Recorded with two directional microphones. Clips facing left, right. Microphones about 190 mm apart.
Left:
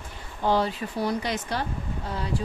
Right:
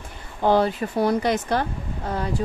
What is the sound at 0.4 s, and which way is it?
Speech, 55° right (ahead or behind).